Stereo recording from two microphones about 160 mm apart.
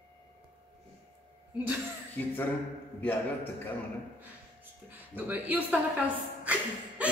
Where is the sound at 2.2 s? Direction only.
10° left (ahead or behind).